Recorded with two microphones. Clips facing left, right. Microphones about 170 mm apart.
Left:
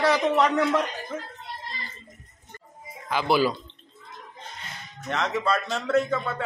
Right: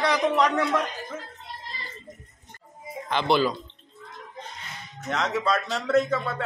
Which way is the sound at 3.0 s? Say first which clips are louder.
Even; 5° left (ahead or behind).